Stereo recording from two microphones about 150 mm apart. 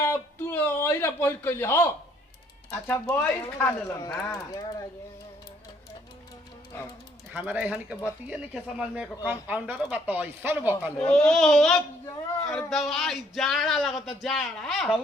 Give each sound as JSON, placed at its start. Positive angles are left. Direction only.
{"t": 0.1, "sound": "speech", "side_deg": 15}
{"t": 7.3, "sound": "speech", "side_deg": -10}
{"t": 10.9, "sound": "speech", "side_deg": 5}